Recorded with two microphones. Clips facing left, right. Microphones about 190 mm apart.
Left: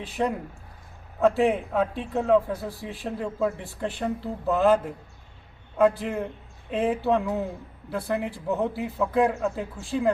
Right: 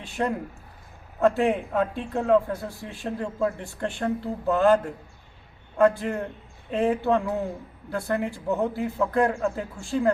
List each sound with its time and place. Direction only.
0.0 s a man's voice: centre (ahead or behind)